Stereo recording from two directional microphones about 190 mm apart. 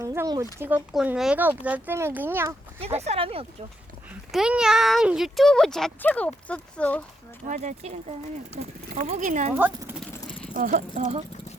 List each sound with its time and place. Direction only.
0.0 s speech: 15° right (ahead or behind)
2.8 s speech: 35° right (ahead or behind)
4.3 s speech: 5° right (ahead or behind)
7.4 s speech: 40° right (ahead or behind)
9.6 s speech: 10° right (ahead or behind)
10.0 s vehicle: 10° left (ahead or behind)
10.6 s speech: 40° right (ahead or behind)